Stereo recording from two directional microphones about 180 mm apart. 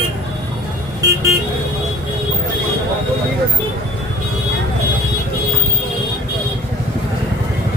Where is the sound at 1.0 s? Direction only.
20° right (ahead or behind).